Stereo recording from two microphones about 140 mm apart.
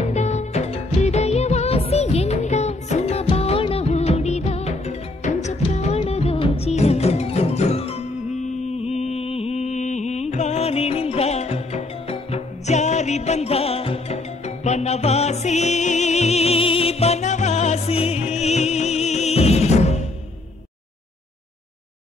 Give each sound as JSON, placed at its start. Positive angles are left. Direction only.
{"t": 0.0, "sound": "music of bollywood", "side_deg": 55}
{"t": 8.6, "sound": "music", "side_deg": 50}